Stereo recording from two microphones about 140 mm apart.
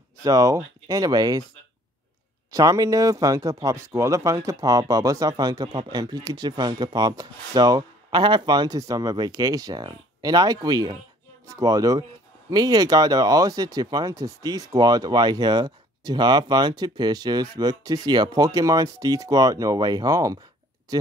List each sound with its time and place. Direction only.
0.2 s speech: 25° right (ahead or behind)
2.5 s speech: 25° right (ahead or behind)